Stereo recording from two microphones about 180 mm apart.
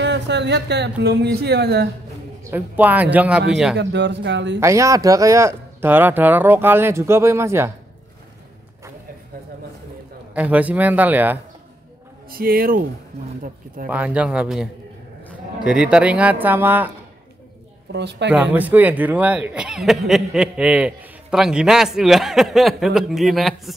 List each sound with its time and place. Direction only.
0.0 s speech: 75° right (ahead or behind)
2.5 s speech: 10° right (ahead or behind)
3.7 s speech: 70° right (ahead or behind)
4.6 s speech: 15° right (ahead or behind)
10.3 s speech: 10° right (ahead or behind)
12.3 s speech: 55° right (ahead or behind)
13.8 s speech: 10° right (ahead or behind)
17.9 s speech: 70° right (ahead or behind)
18.3 s speech: 10° right (ahead or behind)